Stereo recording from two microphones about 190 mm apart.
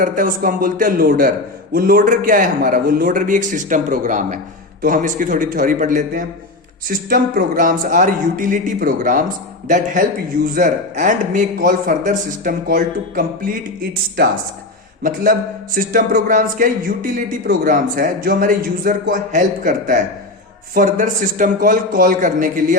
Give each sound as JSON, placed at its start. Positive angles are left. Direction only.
{"t": 0.0, "sound": "a man's voice", "side_deg": -45}
{"t": 15.0, "sound": "a man's voice", "side_deg": -45}